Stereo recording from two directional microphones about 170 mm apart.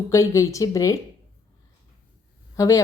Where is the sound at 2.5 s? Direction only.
20° left (ahead or behind).